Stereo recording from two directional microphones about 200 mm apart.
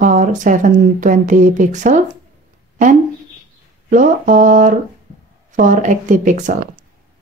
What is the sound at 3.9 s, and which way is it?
A woman's voice, 40° right (ahead or behind).